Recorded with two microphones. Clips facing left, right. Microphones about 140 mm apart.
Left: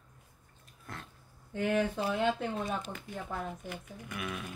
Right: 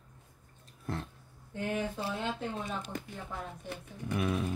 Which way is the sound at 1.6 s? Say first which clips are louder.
Left 5 dB; 80° left.